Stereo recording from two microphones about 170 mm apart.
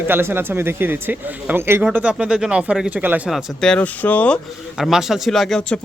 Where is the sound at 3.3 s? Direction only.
Centre (ahead or behind).